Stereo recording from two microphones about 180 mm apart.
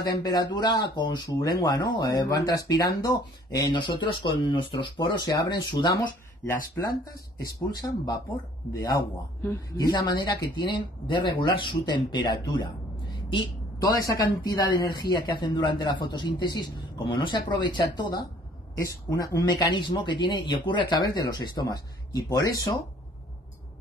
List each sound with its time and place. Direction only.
0.0 s speech: 20° left (ahead or behind)
10.0 s speech: 25° left (ahead or behind)